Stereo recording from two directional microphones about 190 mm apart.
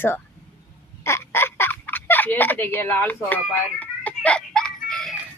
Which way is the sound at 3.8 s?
5° left (ahead or behind).